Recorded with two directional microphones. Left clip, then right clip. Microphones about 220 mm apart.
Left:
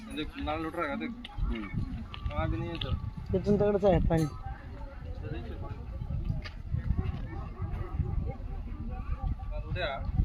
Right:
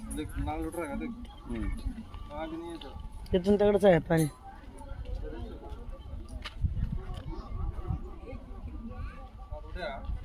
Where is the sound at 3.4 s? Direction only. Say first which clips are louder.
Right 3 dB; 25° right (ahead or behind).